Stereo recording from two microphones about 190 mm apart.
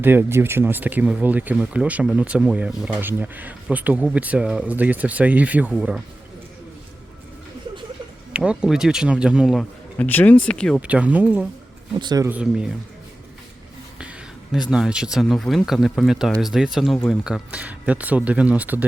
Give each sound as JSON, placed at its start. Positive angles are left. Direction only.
{"t": 0.0, "sound": "speech", "side_deg": -10}
{"t": 8.3, "sound": "speech", "side_deg": -5}
{"t": 10.0, "sound": "speech", "side_deg": 10}
{"t": 10.8, "sound": "speech", "side_deg": -5}
{"t": 11.9, "sound": "speech", "side_deg": -20}
{"t": 12.3, "sound": "speech", "side_deg": -5}
{"t": 14.0, "sound": "speech", "side_deg": -5}